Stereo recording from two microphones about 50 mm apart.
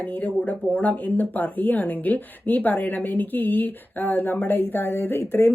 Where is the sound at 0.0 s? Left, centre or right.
Left.